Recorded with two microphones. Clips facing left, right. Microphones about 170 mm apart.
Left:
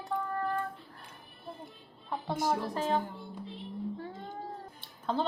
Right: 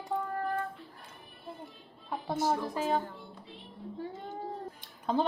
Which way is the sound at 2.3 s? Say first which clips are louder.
Right 1 dB; 10° left (ahead or behind).